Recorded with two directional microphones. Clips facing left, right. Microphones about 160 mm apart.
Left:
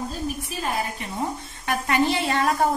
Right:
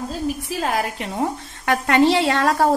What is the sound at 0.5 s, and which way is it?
A woman's voice, 90° right.